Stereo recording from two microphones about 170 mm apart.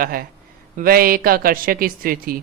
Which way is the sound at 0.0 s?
60° right (ahead or behind).